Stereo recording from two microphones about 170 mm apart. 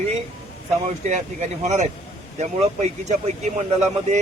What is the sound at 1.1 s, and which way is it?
Speech, 45° right (ahead or behind).